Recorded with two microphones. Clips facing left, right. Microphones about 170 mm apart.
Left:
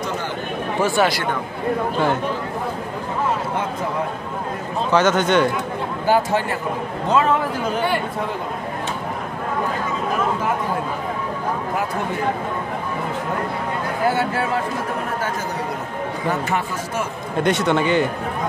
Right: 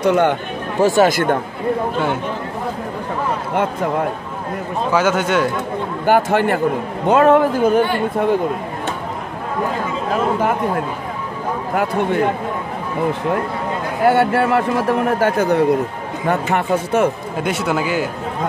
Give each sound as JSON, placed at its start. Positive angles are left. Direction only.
{"t": 0.0, "sound": "a man's voice", "side_deg": -65}
{"t": 0.7, "sound": "a man's voice", "side_deg": -40}
{"t": 4.9, "sound": "speech", "side_deg": -5}
{"t": 6.0, "sound": "a man's voice", "side_deg": -60}
{"t": 14.0, "sound": "a man's voice", "side_deg": -65}
{"t": 17.4, "sound": "speech", "side_deg": -5}